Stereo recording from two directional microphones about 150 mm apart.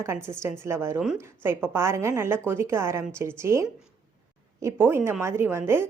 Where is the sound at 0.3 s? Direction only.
20° right (ahead or behind).